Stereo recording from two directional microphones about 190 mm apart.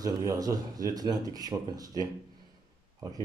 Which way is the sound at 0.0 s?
20° right (ahead or behind).